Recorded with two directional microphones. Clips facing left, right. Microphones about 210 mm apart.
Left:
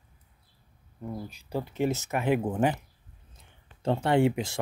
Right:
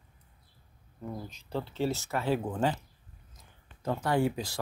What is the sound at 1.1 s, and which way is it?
Speech, 10° left (ahead or behind).